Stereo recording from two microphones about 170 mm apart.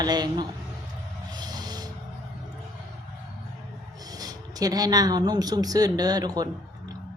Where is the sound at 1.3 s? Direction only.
25° right (ahead or behind).